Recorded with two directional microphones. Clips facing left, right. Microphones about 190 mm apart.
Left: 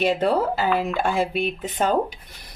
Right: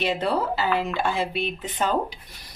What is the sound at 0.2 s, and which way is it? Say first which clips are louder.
Speech: left 3 dB; 45° left (ahead or behind).